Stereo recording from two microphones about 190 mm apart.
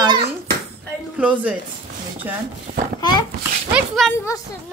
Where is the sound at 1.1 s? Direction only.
5° right (ahead or behind).